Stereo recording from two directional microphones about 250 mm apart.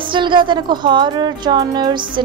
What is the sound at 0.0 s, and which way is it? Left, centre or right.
A woman's voice, centre.